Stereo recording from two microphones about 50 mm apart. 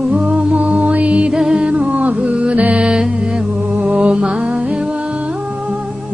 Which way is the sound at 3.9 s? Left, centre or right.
Right.